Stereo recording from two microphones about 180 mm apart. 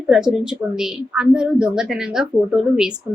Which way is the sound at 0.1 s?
5° right (ahead or behind).